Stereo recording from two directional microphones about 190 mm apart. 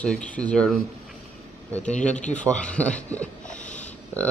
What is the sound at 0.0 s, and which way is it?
Speech, 5° left (ahead or behind).